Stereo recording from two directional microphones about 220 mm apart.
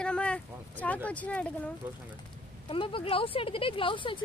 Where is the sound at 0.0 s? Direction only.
5° left (ahead or behind).